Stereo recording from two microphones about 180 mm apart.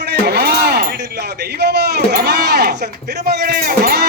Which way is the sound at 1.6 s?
65° right (ahead or behind).